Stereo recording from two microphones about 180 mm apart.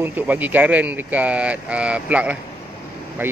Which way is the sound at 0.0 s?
10° right (ahead or behind).